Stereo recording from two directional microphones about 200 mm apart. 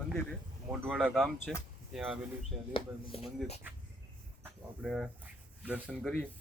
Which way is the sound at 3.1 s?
30° left (ahead or behind).